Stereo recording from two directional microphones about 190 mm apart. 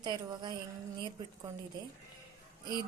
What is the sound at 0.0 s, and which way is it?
Speech, 25° right (ahead or behind).